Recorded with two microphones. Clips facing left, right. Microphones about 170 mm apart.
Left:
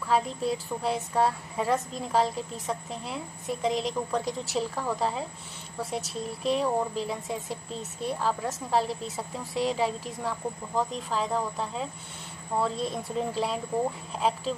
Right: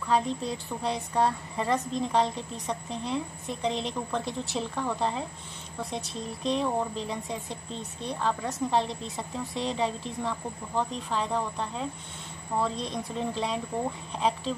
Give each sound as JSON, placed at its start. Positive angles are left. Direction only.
{"t": 0.1, "sound": "a woman's voice", "side_deg": 5}